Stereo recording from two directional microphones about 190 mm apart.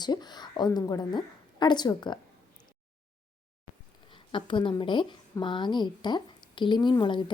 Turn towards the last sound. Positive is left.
turn(degrees=25)  # may be behind; listen again after turning